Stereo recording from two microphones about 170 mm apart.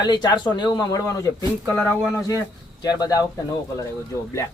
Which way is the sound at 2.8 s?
25° left (ahead or behind).